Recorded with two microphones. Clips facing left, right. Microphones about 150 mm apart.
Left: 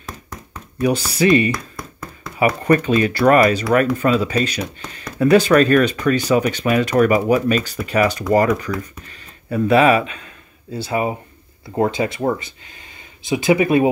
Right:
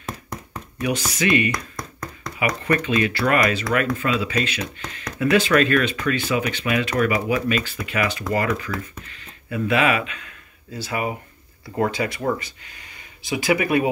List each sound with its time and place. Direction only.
0.8 s speech: 35° left (ahead or behind)
1.5 s tap: 5° left (ahead or behind)
2.3 s speech: 40° left (ahead or behind)